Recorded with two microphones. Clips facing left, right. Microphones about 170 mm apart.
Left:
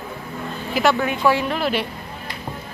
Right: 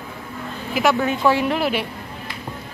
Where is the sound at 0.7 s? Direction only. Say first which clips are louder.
Even; 5° right (ahead or behind).